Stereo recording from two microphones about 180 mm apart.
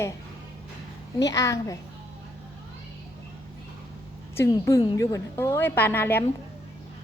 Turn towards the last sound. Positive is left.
turn(degrees=10)  # may be behind; listen again after turning